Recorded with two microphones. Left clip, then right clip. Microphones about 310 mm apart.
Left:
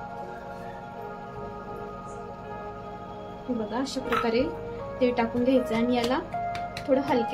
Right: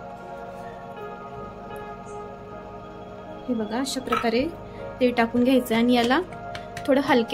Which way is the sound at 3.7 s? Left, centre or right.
Right.